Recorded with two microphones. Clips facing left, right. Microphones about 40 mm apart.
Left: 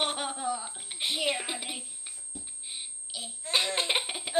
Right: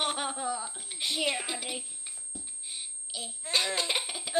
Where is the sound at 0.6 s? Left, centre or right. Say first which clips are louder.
Left 1 dB; centre.